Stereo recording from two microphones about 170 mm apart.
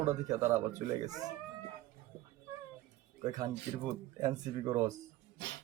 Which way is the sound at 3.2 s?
20° right (ahead or behind).